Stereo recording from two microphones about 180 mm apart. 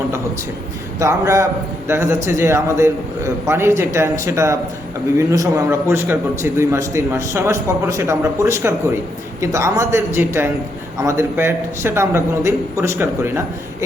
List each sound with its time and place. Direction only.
0.9 s a man's voice: 15° right (ahead or behind)